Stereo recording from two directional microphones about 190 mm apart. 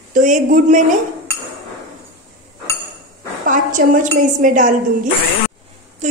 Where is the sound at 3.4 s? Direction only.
45° right (ahead or behind).